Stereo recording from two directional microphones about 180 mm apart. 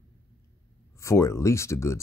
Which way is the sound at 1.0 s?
15° left (ahead or behind).